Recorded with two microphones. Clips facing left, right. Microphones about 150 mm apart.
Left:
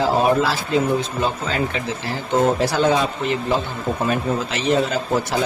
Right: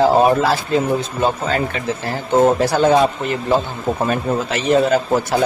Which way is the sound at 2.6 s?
50° right (ahead or behind).